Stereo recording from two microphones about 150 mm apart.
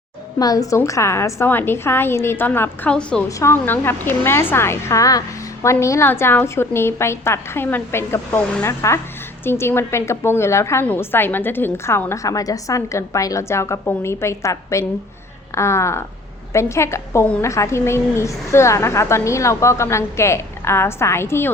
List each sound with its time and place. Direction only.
0.3 s a woman's voice: 25° left (ahead or behind)